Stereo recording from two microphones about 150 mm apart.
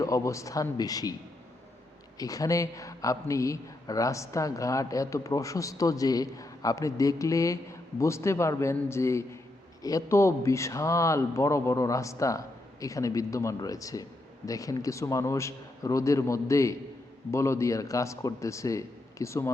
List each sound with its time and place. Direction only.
0.0 s a man's voice: 20° left (ahead or behind)
2.1 s a man's voice: 25° left (ahead or behind)